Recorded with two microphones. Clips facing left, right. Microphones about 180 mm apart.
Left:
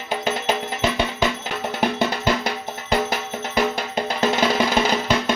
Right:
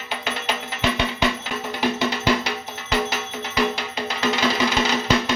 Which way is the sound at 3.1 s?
50° left (ahead or behind).